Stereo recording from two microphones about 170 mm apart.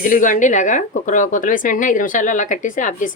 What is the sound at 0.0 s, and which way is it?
Speech, 50° left (ahead or behind).